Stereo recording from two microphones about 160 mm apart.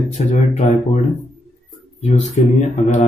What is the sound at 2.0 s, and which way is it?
Speech, 45° left (ahead or behind).